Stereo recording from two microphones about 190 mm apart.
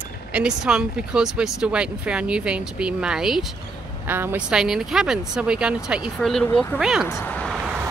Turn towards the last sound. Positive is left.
turn(degrees=-5)  # may be behind; listen again after turning